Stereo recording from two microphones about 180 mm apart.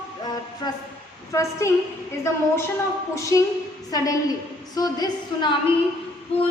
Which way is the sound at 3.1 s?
15° left (ahead or behind).